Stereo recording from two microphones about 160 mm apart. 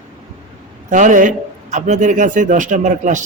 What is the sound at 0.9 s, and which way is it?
Speech, 50° right (ahead or behind).